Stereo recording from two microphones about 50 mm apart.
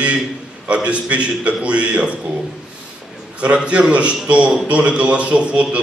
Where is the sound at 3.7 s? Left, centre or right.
Right.